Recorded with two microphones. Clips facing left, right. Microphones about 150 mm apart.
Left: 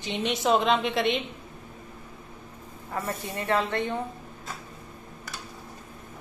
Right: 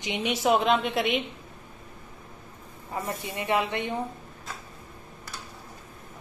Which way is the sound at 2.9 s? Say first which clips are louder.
Even; 15° right (ahead or behind).